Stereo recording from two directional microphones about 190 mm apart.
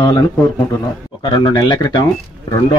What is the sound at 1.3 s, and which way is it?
Speech, 20° left (ahead or behind).